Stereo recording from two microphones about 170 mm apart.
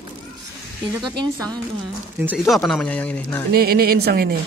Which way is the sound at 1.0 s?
25° right (ahead or behind).